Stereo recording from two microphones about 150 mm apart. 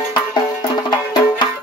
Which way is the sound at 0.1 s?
30° left (ahead or behind).